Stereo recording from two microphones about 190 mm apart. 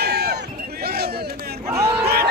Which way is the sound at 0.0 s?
55° right (ahead or behind).